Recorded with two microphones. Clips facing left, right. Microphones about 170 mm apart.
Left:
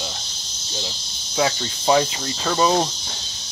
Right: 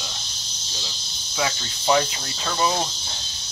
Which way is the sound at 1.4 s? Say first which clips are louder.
Left 5 dB; 25° left (ahead or behind).